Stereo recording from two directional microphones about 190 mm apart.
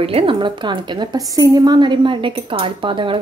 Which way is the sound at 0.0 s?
30° right (ahead or behind).